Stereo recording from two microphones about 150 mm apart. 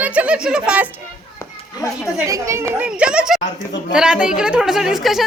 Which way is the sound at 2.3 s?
20° right (ahead or behind).